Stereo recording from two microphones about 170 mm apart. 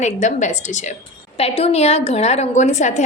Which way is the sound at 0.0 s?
45° left (ahead or behind).